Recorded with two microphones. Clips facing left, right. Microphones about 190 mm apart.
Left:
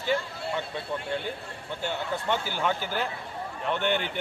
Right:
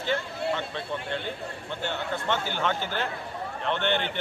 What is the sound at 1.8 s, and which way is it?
A man's voice, 10° left (ahead or behind).